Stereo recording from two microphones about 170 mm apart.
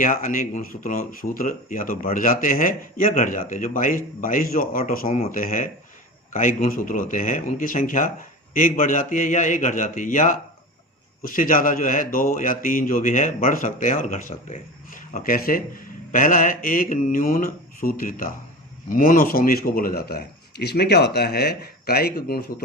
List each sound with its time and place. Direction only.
0.0 s speech: 50° left (ahead or behind)
5.0 s speech: 35° left (ahead or behind)
5.3 s speech: 55° left (ahead or behind)